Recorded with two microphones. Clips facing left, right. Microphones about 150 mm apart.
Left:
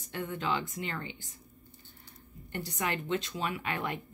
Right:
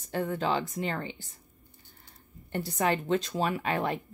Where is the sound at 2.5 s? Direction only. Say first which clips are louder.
Right 6 dB; 35° right (ahead or behind).